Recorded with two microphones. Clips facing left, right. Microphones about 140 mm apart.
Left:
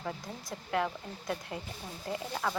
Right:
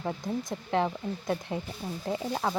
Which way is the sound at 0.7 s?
25° right (ahead or behind).